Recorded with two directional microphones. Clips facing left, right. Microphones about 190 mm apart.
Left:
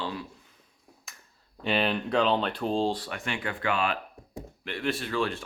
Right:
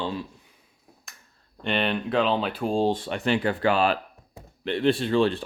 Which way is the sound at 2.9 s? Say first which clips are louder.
Right 7 dB; 25° right (ahead or behind).